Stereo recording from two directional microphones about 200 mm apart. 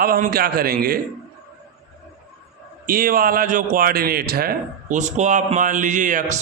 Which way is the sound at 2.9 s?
45° right (ahead or behind).